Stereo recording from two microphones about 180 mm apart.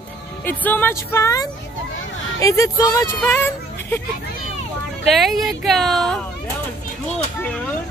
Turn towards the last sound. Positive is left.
turn(degrees=5)  # may be behind; listen again after turning